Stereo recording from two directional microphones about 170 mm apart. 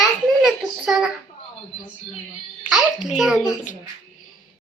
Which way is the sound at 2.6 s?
5° right (ahead or behind).